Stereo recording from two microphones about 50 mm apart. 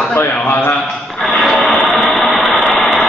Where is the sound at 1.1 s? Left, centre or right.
Centre.